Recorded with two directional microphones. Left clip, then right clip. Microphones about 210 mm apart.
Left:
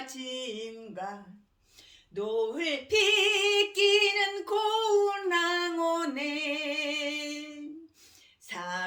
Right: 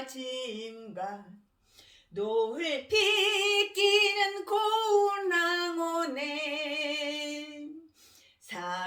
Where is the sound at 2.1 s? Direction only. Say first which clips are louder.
Right 1 dB; 25° left (ahead or behind).